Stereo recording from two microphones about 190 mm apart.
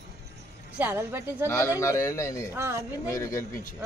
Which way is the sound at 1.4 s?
15° left (ahead or behind).